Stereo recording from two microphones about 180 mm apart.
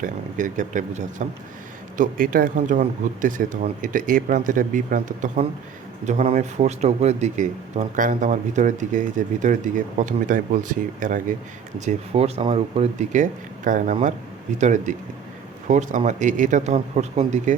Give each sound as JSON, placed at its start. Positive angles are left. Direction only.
{"t": 0.0, "sound": "speech", "side_deg": -45}
{"t": 11.9, "sound": "speech", "side_deg": -35}